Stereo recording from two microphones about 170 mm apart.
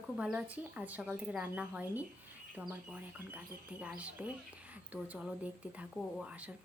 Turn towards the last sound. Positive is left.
turn(degrees=-5)  # may be behind; listen again after turning